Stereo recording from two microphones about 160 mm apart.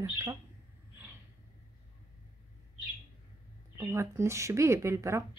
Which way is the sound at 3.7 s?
15° right (ahead or behind).